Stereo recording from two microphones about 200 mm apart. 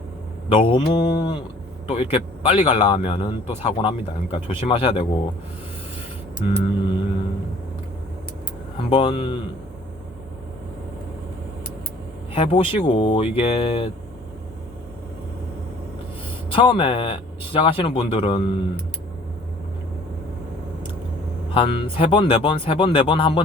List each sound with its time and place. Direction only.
0.4 s speech: 25° left (ahead or behind)
6.4 s speech: 25° left (ahead or behind)
8.9 s speech: 25° left (ahead or behind)
12.3 s speech: 25° left (ahead or behind)
16.5 s speech: 25° left (ahead or behind)
21.5 s speech: 25° left (ahead or behind)